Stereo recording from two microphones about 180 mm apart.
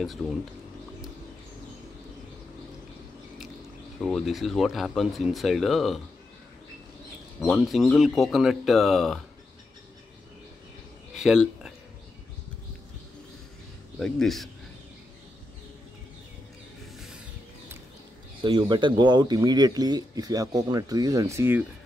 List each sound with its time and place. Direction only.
0.0 s speech: centre (ahead or behind)
4.0 s speech: centre (ahead or behind)
7.4 s speech: centre (ahead or behind)
11.1 s speech: 5° right (ahead or behind)
13.9 s speech: centre (ahead or behind)
18.4 s speech: 25° right (ahead or behind)